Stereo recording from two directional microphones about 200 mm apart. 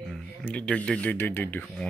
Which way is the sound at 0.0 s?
Centre (ahead or behind).